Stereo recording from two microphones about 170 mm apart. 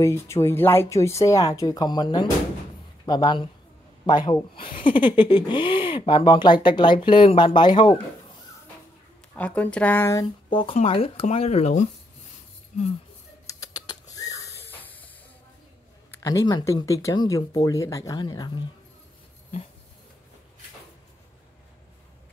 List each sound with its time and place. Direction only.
0.0 s speech: 15° left (ahead or behind)
9.4 s speech: 10° left (ahead or behind)
10.5 s speech: 30° left (ahead or behind)
13.5 s a sound: 20° left (ahead or behind)
16.2 s speech: 20° left (ahead or behind)